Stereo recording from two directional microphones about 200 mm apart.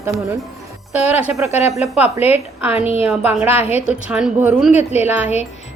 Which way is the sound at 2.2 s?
30° left (ahead or behind).